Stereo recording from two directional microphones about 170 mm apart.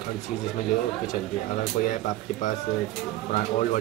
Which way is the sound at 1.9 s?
50° left (ahead or behind).